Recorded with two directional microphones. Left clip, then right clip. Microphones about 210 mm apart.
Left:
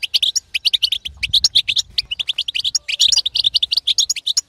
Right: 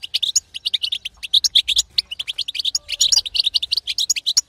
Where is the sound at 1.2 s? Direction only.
30° left (ahead or behind).